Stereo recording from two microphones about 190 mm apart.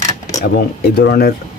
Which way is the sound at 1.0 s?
55° left (ahead or behind).